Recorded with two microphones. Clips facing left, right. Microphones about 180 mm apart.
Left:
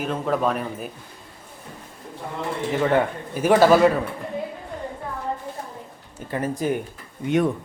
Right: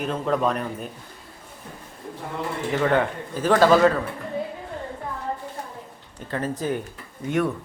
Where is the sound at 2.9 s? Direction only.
10° left (ahead or behind).